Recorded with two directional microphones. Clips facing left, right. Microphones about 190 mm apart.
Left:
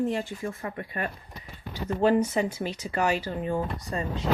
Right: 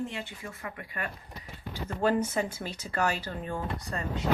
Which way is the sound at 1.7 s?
15° left (ahead or behind).